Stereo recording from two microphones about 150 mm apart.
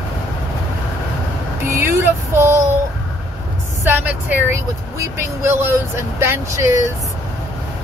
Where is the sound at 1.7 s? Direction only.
15° right (ahead or behind).